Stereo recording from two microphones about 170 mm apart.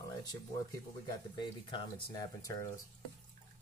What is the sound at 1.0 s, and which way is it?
Speech, 25° left (ahead or behind).